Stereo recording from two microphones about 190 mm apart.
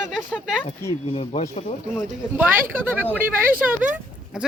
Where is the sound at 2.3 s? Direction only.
10° right (ahead or behind).